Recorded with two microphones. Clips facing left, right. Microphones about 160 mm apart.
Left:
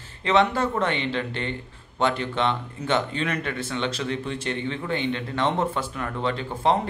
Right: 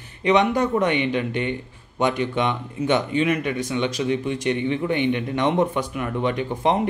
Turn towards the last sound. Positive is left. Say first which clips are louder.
# right 2 dB
turn(degrees=-15)  # may be behind; listen again after turning